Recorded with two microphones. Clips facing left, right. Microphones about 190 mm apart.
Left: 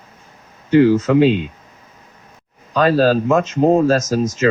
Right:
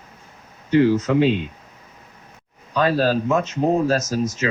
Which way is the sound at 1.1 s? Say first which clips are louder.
Left 5 dB; 90° left.